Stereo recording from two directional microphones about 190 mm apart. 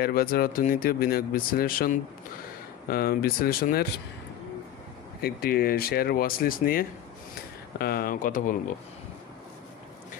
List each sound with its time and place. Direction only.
0.0 s speech: 50° left (ahead or behind)
5.2 s speech: 55° left (ahead or behind)